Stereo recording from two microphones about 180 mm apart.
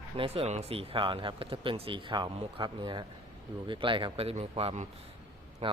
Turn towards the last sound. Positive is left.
turn(degrees=-30)  # may be behind; listen again after turning